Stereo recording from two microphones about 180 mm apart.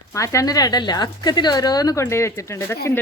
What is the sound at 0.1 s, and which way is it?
A woman's voice, 15° left (ahead or behind).